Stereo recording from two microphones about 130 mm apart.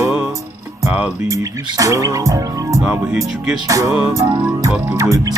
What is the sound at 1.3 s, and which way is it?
Music, 25° right (ahead or behind).